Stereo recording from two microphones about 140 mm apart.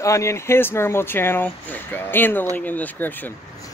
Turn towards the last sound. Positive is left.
turn(degrees=15)  # may be behind; listen again after turning